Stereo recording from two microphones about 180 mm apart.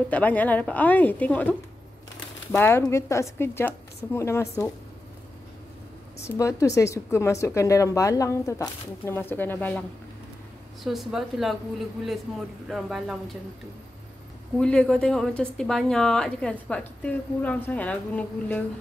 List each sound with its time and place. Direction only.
0.1 s speech: 10° left (ahead or behind)
6.2 s a woman's voice: 15° left (ahead or behind); by 13.4 s centre (ahead or behind)
14.6 s a woman's voice: 5° left (ahead or behind)